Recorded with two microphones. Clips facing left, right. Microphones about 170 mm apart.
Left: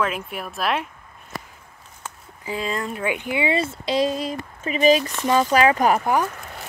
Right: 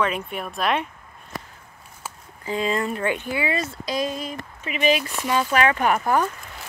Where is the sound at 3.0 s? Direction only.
15° left (ahead or behind); by 6.0 s 30° left (ahead or behind).